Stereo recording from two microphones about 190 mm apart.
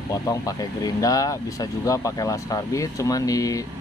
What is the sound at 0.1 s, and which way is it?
Speech, 20° left (ahead or behind).